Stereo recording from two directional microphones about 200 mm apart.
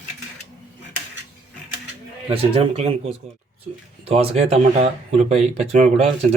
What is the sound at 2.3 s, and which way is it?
Speech, 30° right (ahead or behind).